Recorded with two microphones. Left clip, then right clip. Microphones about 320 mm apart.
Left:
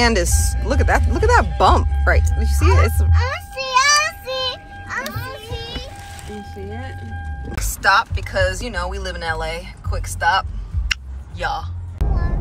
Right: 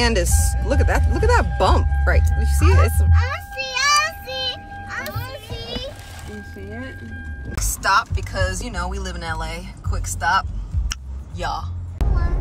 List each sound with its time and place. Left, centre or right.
0.0 s speech: centre
7.5 s speech: centre
10.9 s a sound: centre